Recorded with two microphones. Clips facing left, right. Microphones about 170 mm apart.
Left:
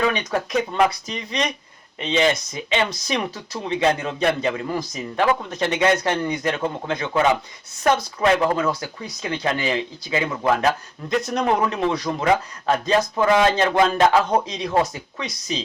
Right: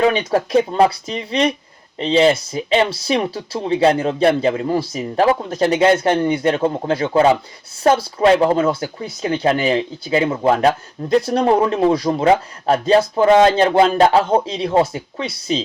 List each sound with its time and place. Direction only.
0.0 s speech: 30° right (ahead or behind)